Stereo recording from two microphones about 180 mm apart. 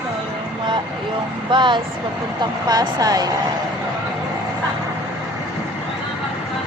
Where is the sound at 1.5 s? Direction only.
25° right (ahead or behind).